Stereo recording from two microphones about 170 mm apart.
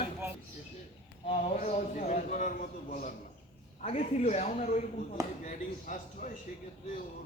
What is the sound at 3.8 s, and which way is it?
A woman's voice, 35° left (ahead or behind).